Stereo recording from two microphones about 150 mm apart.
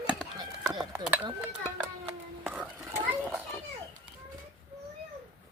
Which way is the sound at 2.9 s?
15° right (ahead or behind).